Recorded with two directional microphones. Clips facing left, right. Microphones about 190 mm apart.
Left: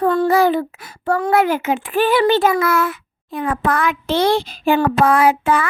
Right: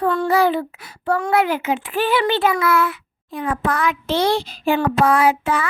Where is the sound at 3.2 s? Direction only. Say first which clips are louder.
Left 2 dB; 60° left (ahead or behind).